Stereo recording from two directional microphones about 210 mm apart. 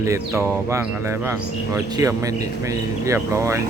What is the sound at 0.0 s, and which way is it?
Speech, 15° right (ahead or behind).